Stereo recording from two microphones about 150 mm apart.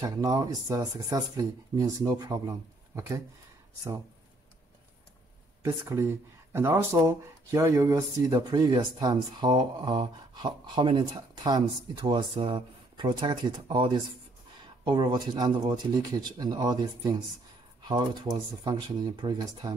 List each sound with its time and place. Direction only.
0.0 s speech: 25° right (ahead or behind)
5.6 s speech: 20° right (ahead or behind)